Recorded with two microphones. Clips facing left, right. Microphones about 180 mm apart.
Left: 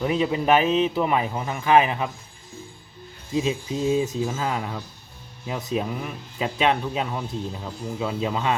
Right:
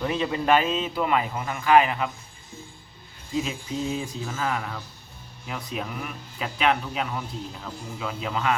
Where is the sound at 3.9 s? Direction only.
20° left (ahead or behind).